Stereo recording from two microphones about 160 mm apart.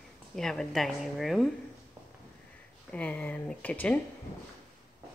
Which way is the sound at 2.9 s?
10° left (ahead or behind).